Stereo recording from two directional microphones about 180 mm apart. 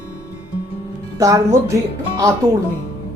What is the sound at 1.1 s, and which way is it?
Speech, 20° right (ahead or behind).